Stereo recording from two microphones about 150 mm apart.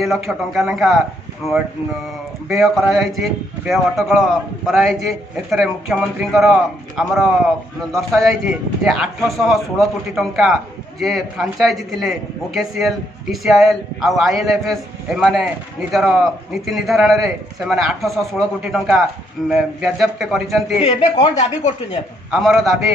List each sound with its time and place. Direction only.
0.0 s a man's voice: centre (ahead or behind)
20.8 s speech: 45° left (ahead or behind)
22.3 s a man's voice: centre (ahead or behind)